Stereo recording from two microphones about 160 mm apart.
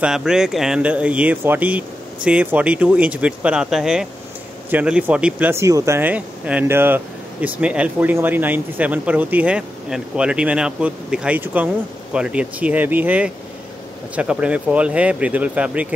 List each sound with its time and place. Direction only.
0.0 s speech: 5° right (ahead or behind)